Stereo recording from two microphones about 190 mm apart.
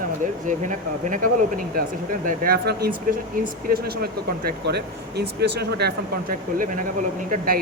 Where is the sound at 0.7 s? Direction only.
45° right (ahead or behind); by 5.9 s 60° right (ahead or behind).